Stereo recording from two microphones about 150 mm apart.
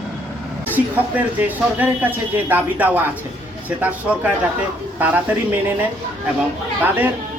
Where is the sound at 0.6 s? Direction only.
10° right (ahead or behind).